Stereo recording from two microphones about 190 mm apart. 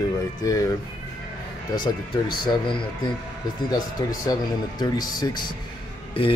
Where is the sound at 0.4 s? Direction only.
15° left (ahead or behind).